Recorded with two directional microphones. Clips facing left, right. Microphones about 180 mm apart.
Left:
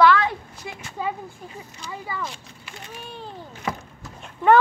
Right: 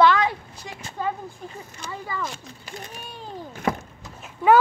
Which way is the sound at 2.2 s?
40° right (ahead or behind).